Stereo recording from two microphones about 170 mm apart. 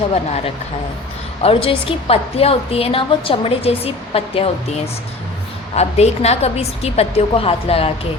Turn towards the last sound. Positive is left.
turn(degrees=35)  # may be behind; listen again after turning